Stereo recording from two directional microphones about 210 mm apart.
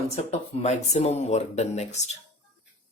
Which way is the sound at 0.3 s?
30° left (ahead or behind).